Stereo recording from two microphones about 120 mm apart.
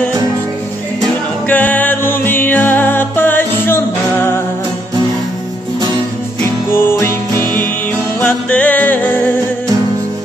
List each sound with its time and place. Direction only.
1.5 s music: 15° left (ahead or behind)
6.7 s music: 20° left (ahead or behind)
8.2 s music: 10° left (ahead or behind)